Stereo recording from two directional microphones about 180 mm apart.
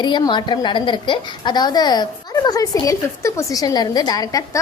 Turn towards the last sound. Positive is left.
turn(degrees=20)  # may be behind; listen again after turning